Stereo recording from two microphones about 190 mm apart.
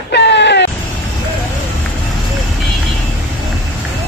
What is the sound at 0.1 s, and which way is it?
Vehicle, 65° left (ahead or behind).